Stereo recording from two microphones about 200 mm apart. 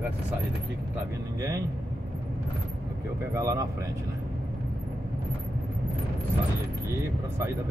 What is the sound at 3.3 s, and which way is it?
Speech, 15° right (ahead or behind).